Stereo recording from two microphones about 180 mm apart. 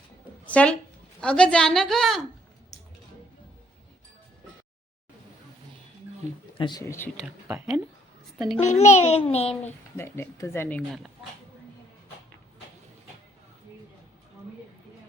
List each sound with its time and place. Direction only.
0.4 s a woman's voice: 5° left (ahead or behind)
6.6 s a man's voice: 20° left (ahead or behind)
7.4 s a woman's voice: 10° right (ahead or behind)
8.5 s a child's voice: 40° left (ahead or behind)
10.0 s speech: 15° left (ahead or behind)